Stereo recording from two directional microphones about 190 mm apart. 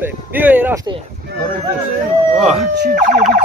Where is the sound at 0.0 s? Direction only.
10° right (ahead or behind).